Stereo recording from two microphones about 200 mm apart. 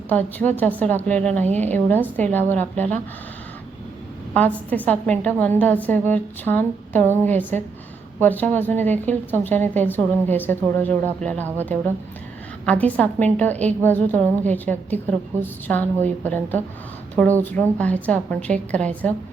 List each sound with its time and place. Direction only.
0.1 s a woman's voice: 10° left (ahead or behind)
4.4 s a woman's voice: 10° left (ahead or behind)